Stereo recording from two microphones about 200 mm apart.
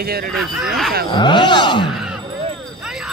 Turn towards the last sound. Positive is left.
turn(degrees=-5)  # may be behind; listen again after turning